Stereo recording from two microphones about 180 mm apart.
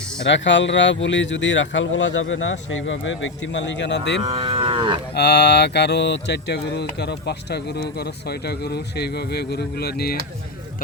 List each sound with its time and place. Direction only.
0.3 s speech: 85° left
4.4 s moo: 25° right (ahead or behind)
5.1 s speech: 70° left (ahead or behind)